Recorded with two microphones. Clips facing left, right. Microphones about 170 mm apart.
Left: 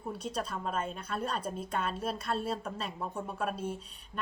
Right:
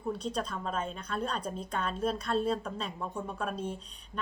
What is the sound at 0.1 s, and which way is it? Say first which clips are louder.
A woman's voice: right 2 dB; 5° left (ahead or behind).